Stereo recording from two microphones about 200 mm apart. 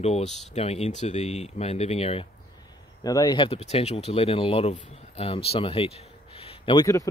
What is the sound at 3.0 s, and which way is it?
Speech, 20° left (ahead or behind).